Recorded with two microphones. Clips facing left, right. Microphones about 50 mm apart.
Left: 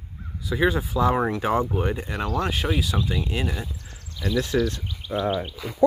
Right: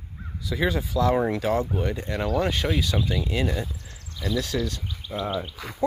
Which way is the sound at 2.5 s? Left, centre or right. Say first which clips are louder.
Even; centre.